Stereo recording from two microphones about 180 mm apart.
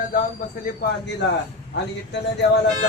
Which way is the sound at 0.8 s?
60° left (ahead or behind).